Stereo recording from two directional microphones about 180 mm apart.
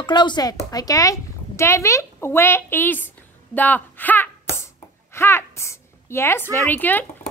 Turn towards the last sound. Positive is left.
turn(degrees=10)  # may be behind; listen again after turning